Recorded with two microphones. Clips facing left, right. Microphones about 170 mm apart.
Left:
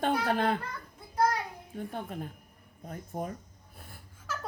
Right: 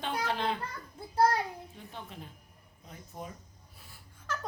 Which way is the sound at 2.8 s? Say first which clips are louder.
Left 8 dB; 50° left (ahead or behind).